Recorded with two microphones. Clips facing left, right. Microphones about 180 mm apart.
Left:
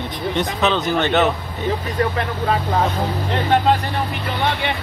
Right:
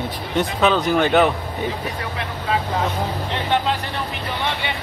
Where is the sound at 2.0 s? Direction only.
50° left (ahead or behind).